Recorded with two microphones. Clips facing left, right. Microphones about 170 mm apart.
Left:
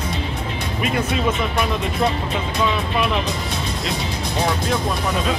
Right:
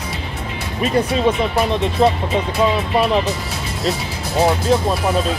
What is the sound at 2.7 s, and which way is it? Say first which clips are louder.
Speech: right 4 dB; 35° right (ahead or behind).